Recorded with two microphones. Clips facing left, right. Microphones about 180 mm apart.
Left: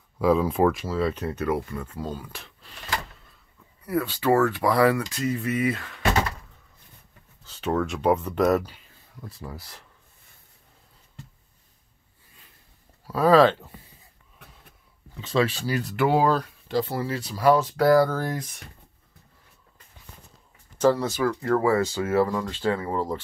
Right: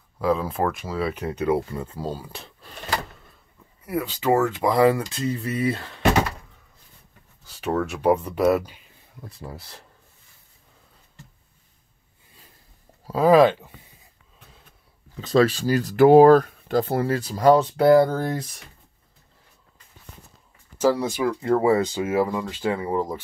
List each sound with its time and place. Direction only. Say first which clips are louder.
0.2 s speech: left 3 dB; centre (ahead or behind); by 2.5 s 30° right (ahead or behind)
3.8 s speech: even; 15° right (ahead or behind); by 6.0 s 30° right (ahead or behind)
7.4 s speech: right 1 dB; 10° right (ahead or behind)
9.2 s speech: right 1 dB; 25° right (ahead or behind)
13.0 s speech: right 2 dB; 20° right (ahead or behind)
15.1 s speech: right 5 dB; 40° right (ahead or behind)
20.7 s speech: even; 10° right (ahead or behind)